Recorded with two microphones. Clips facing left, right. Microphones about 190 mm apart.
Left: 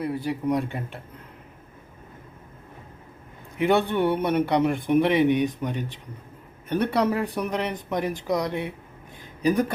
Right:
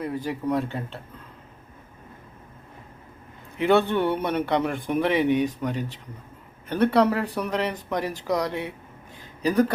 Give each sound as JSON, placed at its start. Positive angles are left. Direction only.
{"t": 0.2, "sound": "speech", "side_deg": 15}
{"t": 3.6, "sound": "speech", "side_deg": 15}
{"t": 6.7, "sound": "speech", "side_deg": 15}